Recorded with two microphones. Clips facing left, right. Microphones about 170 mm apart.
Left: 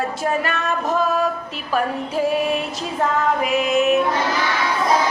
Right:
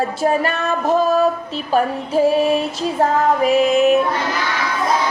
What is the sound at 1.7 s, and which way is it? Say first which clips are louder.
Female singing: right 4 dB; 30° right (ahead or behind).